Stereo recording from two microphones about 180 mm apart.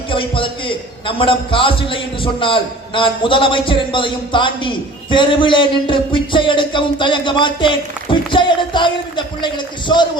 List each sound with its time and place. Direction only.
0.1 s music: 30° left (ahead or behind)